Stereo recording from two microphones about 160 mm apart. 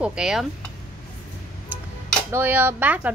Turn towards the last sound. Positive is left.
turn(degrees=-10)  # may be behind; listen again after turning